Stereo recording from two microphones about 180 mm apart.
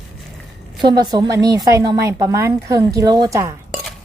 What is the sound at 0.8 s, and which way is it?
A woman's voice, 25° right (ahead or behind).